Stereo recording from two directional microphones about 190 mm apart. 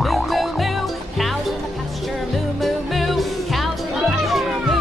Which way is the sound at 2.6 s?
Centre (ahead or behind).